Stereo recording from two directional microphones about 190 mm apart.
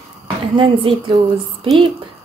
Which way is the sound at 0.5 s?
25° right (ahead or behind).